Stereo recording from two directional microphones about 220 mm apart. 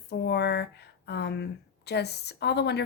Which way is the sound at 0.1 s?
50° left (ahead or behind).